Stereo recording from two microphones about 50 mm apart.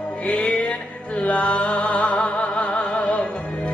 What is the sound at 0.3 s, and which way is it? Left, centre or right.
Music, left.